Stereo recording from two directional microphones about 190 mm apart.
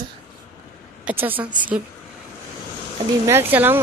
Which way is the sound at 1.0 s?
10° right (ahead or behind).